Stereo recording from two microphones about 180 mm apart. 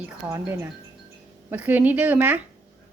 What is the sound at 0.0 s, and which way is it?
A woman's voice, 10° right (ahead or behind).